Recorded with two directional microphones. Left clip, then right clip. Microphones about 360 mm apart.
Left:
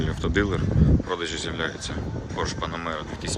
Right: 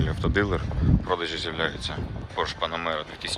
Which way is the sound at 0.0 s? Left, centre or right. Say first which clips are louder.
Even; centre.